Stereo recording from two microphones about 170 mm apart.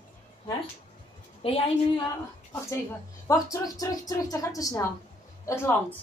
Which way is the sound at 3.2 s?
20° left (ahead or behind).